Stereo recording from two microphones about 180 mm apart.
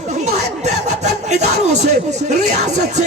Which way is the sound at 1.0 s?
40° right (ahead or behind).